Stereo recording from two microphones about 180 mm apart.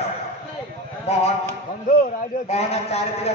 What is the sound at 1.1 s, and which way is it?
Speech, 35° left (ahead or behind).